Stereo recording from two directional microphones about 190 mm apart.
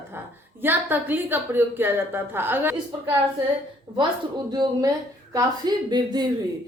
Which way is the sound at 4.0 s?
20° right (ahead or behind).